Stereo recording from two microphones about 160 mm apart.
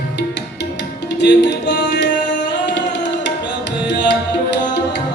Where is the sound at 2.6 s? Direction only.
90° left.